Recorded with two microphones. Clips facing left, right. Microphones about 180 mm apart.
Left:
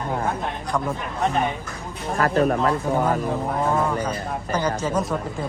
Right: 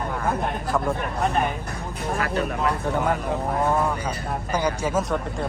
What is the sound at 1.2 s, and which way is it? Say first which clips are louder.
Speech: left 2 dB; centre (ahead or behind).